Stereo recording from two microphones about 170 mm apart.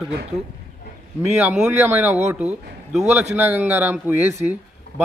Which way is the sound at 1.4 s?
10° right (ahead or behind).